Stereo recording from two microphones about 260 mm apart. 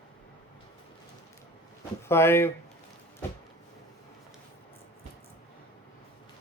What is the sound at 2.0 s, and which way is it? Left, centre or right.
Speech, centre.